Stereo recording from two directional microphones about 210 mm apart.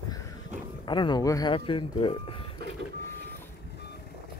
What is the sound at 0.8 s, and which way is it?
Speech, 20° left (ahead or behind).